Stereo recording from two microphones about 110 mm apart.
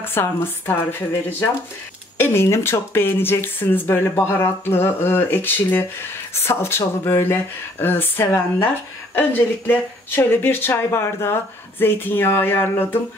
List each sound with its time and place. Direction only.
0.0 s speech: 20° left (ahead or behind)
2.1 s speech: 20° left (ahead or behind)